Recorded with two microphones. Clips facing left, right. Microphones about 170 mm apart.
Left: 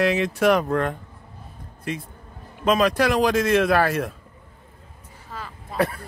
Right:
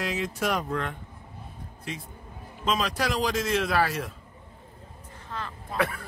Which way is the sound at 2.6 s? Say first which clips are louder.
Left 8 dB; 60° left (ahead or behind).